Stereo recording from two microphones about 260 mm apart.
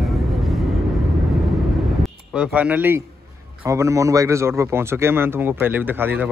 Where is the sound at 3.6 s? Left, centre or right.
Centre.